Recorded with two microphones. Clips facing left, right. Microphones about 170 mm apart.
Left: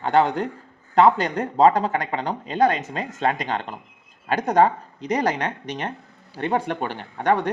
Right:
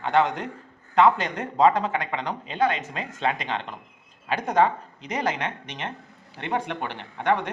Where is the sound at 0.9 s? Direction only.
35° left (ahead or behind).